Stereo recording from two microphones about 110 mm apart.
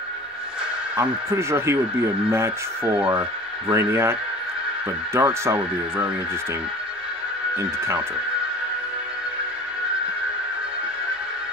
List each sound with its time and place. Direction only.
0.9 s speech: 25° right (ahead or behind)
3.0 s speech: 10° right (ahead or behind)
3.7 s speech: 25° right (ahead or behind)
7.5 s speech: 25° right (ahead or behind)